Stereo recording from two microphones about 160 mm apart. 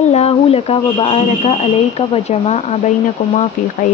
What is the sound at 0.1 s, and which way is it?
Speech, 40° left (ahead or behind).